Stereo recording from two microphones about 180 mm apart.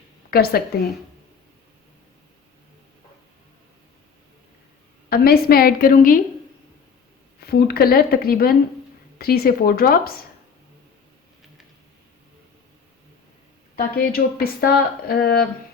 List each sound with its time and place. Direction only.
0.3 s speech: 55° left (ahead or behind)
5.0 s speech: 55° left (ahead or behind)
7.4 s speech: 60° left (ahead or behind)
13.7 s speech: 55° left (ahead or behind)